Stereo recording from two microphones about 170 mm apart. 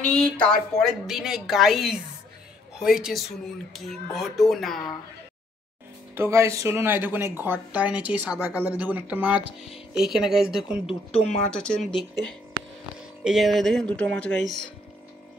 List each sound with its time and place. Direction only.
0.0 s a woman's voice: 5° left (ahead or behind)
6.1 s a woman's voice: 15° right (ahead or behind)
10.9 s speech: 35° left (ahead or behind)
11.5 s a woman's voice: 5° left (ahead or behind)
13.2 s a woman's voice: centre (ahead or behind)